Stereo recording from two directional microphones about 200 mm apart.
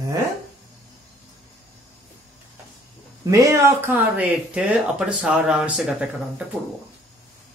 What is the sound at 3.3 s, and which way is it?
Speech, 15° right (ahead or behind).